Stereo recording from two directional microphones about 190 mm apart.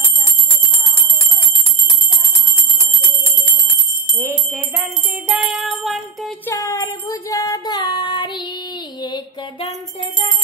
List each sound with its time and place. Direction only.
4.2 s jingle bell: 15° right (ahead or behind)
5.3 s music: 5° right (ahead or behind)
6.5 s child singing: 15° left (ahead or behind)
9.0 s music: 25° left (ahead or behind)